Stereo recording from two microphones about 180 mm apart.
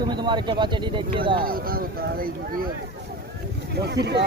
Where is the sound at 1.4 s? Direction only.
55° right (ahead or behind).